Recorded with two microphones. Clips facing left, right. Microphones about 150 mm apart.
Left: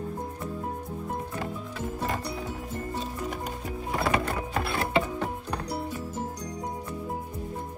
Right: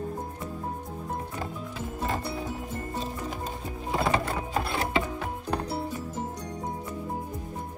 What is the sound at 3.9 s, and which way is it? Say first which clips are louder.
Music: right 1 dB; 20° right (ahead or behind).